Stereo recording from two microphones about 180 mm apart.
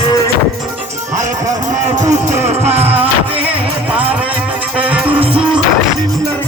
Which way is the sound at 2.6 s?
35° right (ahead or behind).